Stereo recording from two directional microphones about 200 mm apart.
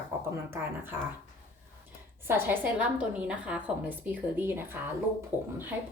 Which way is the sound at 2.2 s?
10° right (ahead or behind).